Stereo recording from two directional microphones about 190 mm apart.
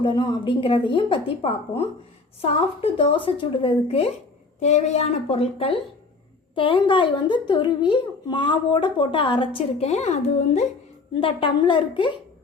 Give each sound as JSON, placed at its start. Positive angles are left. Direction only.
{"t": 0.0, "sound": "a woman's voice", "side_deg": 25}